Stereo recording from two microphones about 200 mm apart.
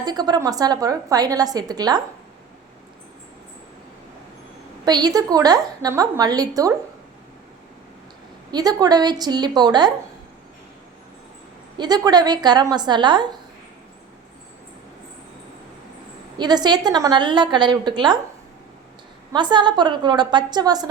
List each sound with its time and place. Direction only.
0.0 s a woman's voice: 20° right (ahead or behind)
4.9 s a woman's voice: 20° right (ahead or behind)
8.5 s a woman's voice: 20° right (ahead or behind)
11.8 s a woman's voice: 20° right (ahead or behind)
16.4 s a woman's voice: 20° right (ahead or behind)
19.3 s a woman's voice: 25° right (ahead or behind)